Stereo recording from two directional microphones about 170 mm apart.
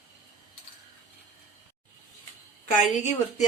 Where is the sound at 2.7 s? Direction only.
50° left (ahead or behind).